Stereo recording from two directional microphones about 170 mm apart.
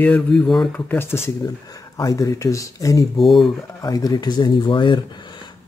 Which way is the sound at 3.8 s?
20° left (ahead or behind).